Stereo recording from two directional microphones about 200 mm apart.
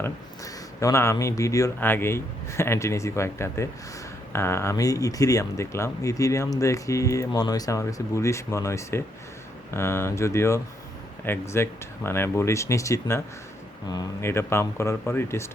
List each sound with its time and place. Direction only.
0.0 s speech: 15° left (ahead or behind)